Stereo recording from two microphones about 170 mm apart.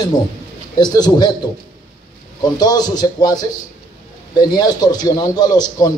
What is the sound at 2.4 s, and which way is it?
A man's voice, 25° left (ahead or behind).